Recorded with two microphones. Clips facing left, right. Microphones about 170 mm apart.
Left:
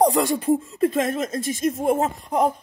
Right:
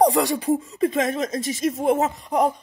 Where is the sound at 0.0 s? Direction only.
Centre (ahead or behind).